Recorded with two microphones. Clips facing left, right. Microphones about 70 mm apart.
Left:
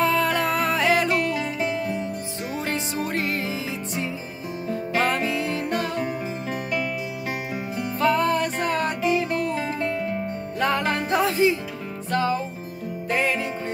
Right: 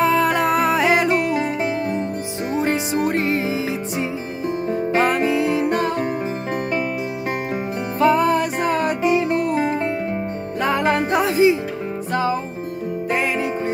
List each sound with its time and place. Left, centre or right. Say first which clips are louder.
0.0 s music: right 4 dB; centre
4.9 s music: right 5 dB; centre
8.0 s music: right 5 dB; centre
9.3 s music: right 6 dB; right
10.6 s music: right 4 dB; centre